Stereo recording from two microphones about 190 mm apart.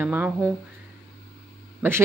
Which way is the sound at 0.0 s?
10° right (ahead or behind).